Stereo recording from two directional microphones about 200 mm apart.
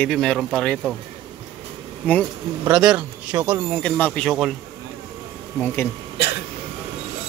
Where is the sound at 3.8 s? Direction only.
5° left (ahead or behind).